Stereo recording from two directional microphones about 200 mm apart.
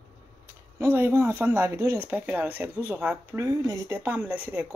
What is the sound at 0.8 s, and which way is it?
Speech, 10° right (ahead or behind).